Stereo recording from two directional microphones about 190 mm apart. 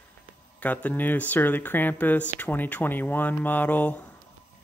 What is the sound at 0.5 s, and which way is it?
Speech, 10° left (ahead or behind).